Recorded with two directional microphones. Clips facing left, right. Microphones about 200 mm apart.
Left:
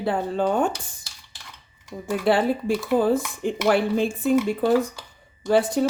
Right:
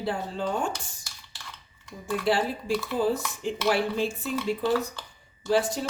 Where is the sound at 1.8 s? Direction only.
55° left (ahead or behind).